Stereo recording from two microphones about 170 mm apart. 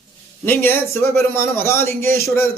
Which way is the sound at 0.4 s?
15° left (ahead or behind).